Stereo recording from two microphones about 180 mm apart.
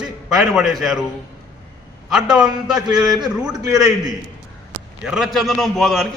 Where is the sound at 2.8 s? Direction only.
20° right (ahead or behind).